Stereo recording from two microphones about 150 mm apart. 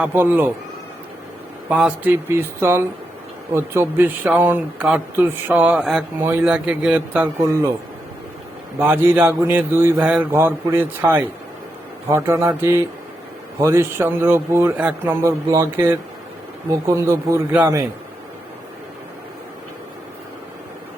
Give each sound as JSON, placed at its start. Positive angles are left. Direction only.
{"t": 0.0, "sound": "speech", "side_deg": -15}
{"t": 1.7, "sound": "speech", "side_deg": -10}
{"t": 6.1, "sound": "speech", "side_deg": -15}
{"t": 8.8, "sound": "a man's voice", "side_deg": -15}